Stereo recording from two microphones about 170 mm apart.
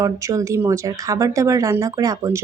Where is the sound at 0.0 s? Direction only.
20° right (ahead or behind).